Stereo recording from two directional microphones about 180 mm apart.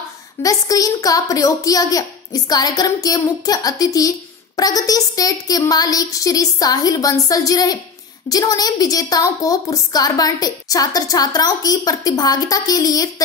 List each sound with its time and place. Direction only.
0.4 s a woman's voice: 20° left (ahead or behind)